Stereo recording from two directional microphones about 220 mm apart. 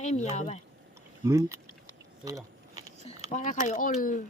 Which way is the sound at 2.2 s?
15° right (ahead or behind).